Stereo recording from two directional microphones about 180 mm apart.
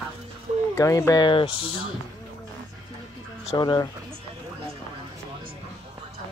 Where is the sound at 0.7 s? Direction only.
15° left (ahead or behind).